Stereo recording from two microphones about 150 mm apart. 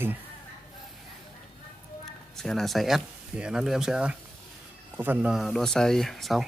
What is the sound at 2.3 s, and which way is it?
Speech, 5° left (ahead or behind).